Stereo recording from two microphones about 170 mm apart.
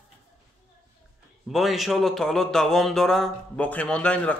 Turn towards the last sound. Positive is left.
turn(degrees=5)  # may be behind; listen again after turning